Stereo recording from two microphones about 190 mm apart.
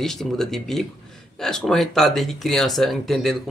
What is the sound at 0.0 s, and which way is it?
Speech, centre (ahead or behind).